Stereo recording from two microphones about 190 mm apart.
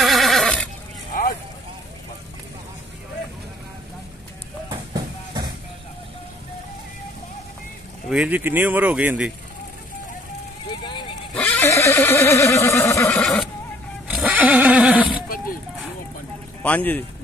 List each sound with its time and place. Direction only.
0.0 s neigh: centre (ahead or behind)
4.6 s a sound: 20° right (ahead or behind)
8.1 s speech: 5° right (ahead or behind)
10.7 s horse: 25° left (ahead or behind)
11.3 s neigh: 10° left (ahead or behind)
13.1 s neigh: centre (ahead or behind)
14.0 s speech: 10° right (ahead or behind)
16.6 s speech: 10° left (ahead or behind)